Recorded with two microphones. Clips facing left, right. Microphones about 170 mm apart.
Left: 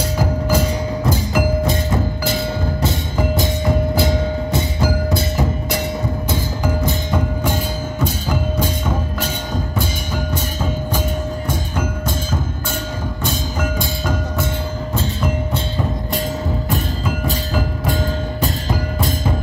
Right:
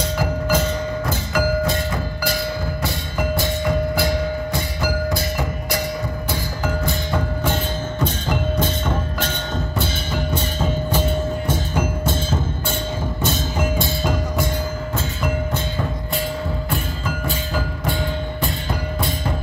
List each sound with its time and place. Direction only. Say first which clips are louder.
0.5 s music: left 2 dB; 15° left (ahead or behind)
6.3 s music: left 2 dB; 20° left (ahead or behind)
10.3 s music: even; 10° left (ahead or behind)
17.8 s music: left 3 dB; 40° left (ahead or behind)